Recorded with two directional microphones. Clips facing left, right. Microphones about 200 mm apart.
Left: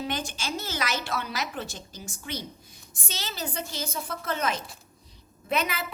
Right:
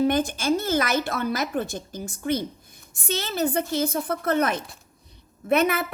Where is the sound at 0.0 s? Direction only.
55° right (ahead or behind).